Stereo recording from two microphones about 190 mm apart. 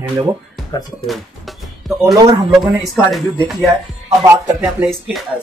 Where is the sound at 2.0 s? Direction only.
20° right (ahead or behind).